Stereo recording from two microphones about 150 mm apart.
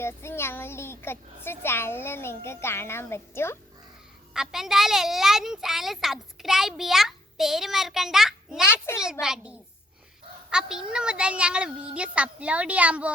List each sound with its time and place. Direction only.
0.0 s a child's voice: 15° left (ahead or behind)
4.4 s a woman's voice: 5° right (ahead or behind)
8.6 s a child's voice: 15° left (ahead or behind)
9.2 s a woman's voice: 5° right (ahead or behind)